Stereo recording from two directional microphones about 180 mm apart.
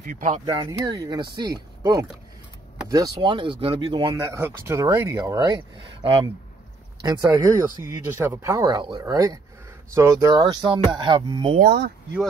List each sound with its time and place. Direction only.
0.0 s speech: 45° right (ahead or behind)
0.5 s speech: 25° right (ahead or behind)
4.3 s speech: 15° right (ahead or behind)
7.0 s speech: 20° right (ahead or behind)
11.5 s speech: 60° right (ahead or behind)